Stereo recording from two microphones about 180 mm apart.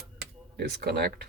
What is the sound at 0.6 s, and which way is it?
Speech, 65° right (ahead or behind).